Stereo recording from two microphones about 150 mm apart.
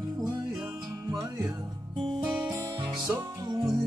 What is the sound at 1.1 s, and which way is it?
Music, 20° right (ahead or behind).